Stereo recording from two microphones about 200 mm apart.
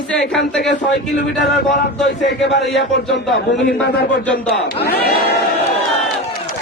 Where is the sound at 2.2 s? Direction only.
60° left (ahead or behind).